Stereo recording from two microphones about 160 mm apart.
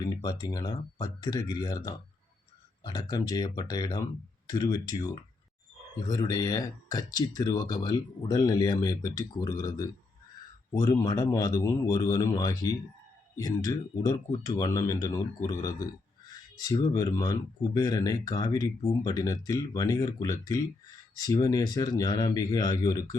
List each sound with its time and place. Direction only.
0.0 s speech: 25° left (ahead or behind)